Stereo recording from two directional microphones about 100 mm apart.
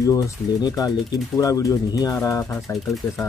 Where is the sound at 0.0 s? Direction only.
35° left (ahead or behind).